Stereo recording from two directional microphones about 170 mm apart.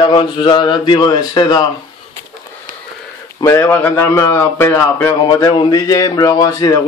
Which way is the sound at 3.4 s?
15° left (ahead or behind).